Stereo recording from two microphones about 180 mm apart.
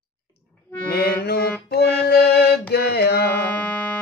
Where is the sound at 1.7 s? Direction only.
60° left (ahead or behind).